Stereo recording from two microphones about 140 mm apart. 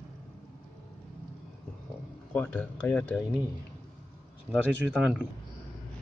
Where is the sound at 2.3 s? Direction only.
10° left (ahead or behind).